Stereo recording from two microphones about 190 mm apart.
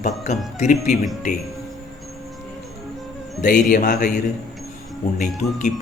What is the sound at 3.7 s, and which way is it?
Speech, 40° left (ahead or behind).